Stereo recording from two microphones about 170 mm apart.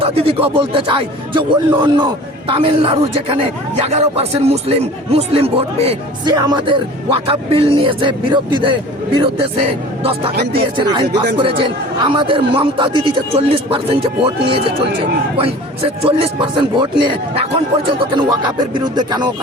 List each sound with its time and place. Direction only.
0.0 s speech: 35° right (ahead or behind)
6.3 s speech: 20° right (ahead or behind)
10.0 s speech: 35° right (ahead or behind)